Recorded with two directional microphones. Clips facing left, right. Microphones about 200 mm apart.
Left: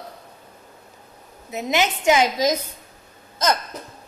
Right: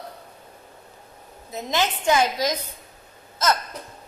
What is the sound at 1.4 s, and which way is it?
A woman's voice, 10° left (ahead or behind).